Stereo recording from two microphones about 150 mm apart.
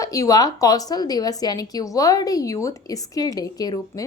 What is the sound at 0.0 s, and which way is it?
A woman's voice, 20° left (ahead or behind).